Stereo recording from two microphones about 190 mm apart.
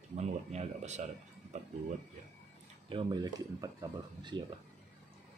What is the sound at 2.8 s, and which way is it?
Speech, 25° right (ahead or behind).